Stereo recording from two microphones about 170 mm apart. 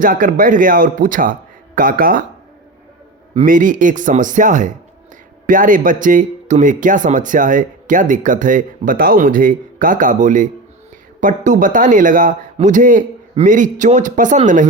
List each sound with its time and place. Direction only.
0.0 s speech: 55° right (ahead or behind)
3.4 s speech: 50° right (ahead or behind)